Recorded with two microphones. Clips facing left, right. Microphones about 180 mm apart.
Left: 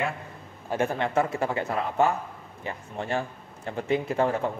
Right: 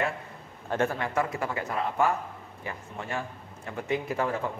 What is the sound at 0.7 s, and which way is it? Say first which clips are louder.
Speech: left 1 dB; 15° left (ahead or behind).